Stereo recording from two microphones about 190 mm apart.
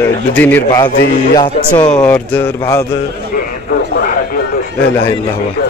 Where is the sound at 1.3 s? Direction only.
20° left (ahead or behind).